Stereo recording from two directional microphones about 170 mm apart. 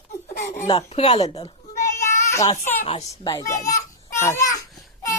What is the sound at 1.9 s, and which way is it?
Child singing, 15° left (ahead or behind).